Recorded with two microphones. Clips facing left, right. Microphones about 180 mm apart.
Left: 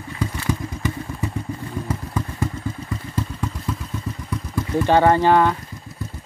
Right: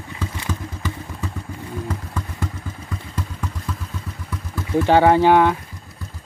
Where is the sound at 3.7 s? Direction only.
10° left (ahead or behind).